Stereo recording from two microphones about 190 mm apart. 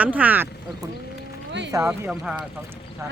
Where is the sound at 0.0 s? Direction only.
10° right (ahead or behind).